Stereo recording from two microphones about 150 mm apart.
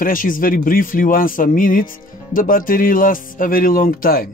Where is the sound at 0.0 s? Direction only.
65° left (ahead or behind).